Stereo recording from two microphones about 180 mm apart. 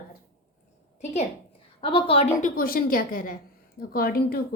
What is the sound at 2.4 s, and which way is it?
A woman's voice, 55° left (ahead or behind).